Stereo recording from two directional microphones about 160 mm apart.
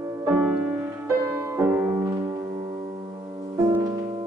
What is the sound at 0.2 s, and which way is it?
Music, 10° right (ahead or behind).